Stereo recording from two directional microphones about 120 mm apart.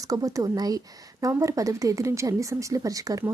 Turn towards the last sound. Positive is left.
turn(degrees=-30)  # may be behind; listen again after turning